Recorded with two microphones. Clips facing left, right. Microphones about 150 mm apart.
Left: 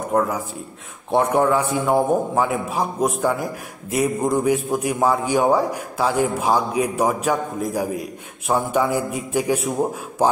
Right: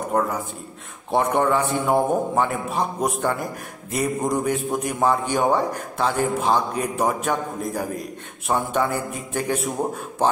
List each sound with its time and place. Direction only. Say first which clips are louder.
0.1 s a man's voice: left 3 dB; centre (ahead or behind)